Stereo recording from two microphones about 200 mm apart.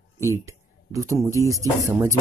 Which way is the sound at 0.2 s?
15° right (ahead or behind).